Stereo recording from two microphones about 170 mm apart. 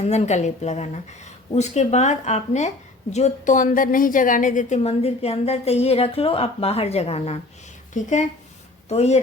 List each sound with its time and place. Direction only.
0.0 s speech: 40° left (ahead or behind)